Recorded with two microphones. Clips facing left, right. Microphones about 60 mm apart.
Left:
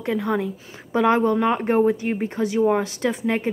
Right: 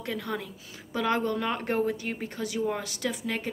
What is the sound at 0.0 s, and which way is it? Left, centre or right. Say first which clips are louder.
Speech: left 10 dB; left.